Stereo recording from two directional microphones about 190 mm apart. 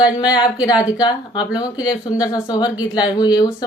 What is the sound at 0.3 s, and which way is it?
Speech, 20° left (ahead or behind).